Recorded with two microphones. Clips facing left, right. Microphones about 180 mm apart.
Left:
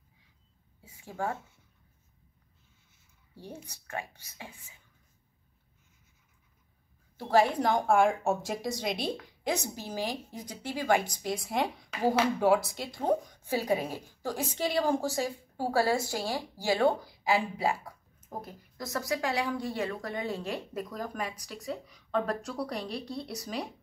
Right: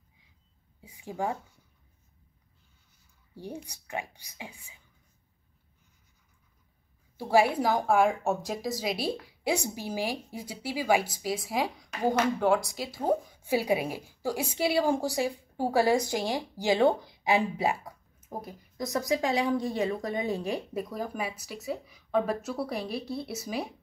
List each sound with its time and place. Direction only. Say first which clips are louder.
0.7 s a woman's voice: right 3 dB; 15° right (ahead or behind)
3.3 s a woman's voice: right 5 dB; 15° right (ahead or behind)
7.2 s a woman's voice: right 1 dB; 10° right (ahead or behind)